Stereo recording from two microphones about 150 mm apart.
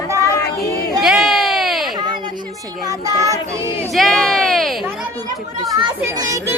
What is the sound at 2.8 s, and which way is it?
Speech, 20° right (ahead or behind).